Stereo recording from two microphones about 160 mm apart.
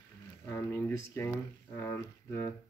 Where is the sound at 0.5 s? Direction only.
15° left (ahead or behind).